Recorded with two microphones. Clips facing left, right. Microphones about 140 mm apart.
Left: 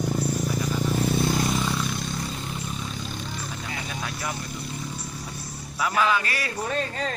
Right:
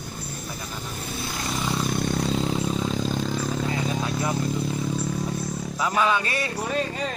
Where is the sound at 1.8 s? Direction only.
55° right (ahead or behind); by 2.8 s 90° right.